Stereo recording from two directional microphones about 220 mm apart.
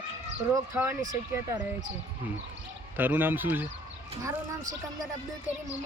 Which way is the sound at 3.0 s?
10° right (ahead or behind).